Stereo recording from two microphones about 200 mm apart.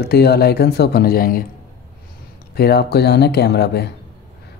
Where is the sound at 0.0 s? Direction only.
55° left (ahead or behind).